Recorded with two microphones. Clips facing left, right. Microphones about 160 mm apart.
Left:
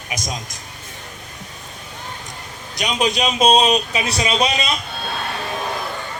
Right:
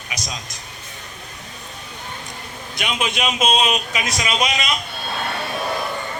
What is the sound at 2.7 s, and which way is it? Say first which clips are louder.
A man's voice: left 4 dB; 40° left (ahead or behind).